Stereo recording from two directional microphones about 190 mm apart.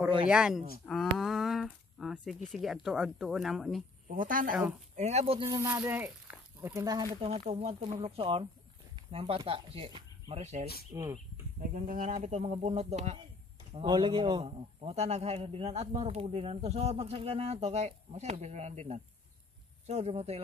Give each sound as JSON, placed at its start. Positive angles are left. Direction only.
{"t": 0.3, "sound": "speech", "side_deg": -5}
{"t": 4.1, "sound": "a man's voice", "side_deg": -45}
{"t": 5.4, "sound": "speech", "side_deg": -15}
{"t": 7.2, "sound": "a man's voice", "side_deg": -35}
{"t": 10.9, "sound": "speech", "side_deg": -15}
{"t": 11.7, "sound": "a man's voice", "side_deg": -45}
{"t": 13.7, "sound": "a man's voice", "side_deg": -25}